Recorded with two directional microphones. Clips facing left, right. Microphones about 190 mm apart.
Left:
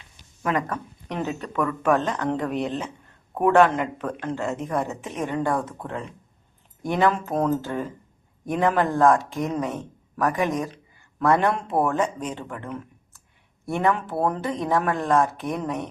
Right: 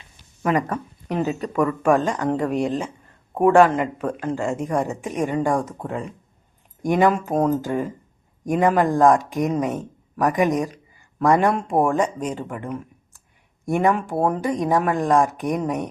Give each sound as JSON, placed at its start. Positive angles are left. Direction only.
{"t": 0.5, "sound": "speech", "side_deg": -10}